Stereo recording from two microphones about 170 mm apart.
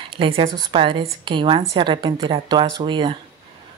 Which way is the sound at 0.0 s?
30° right (ahead or behind).